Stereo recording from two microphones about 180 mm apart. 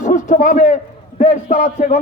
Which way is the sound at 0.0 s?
45° left (ahead or behind).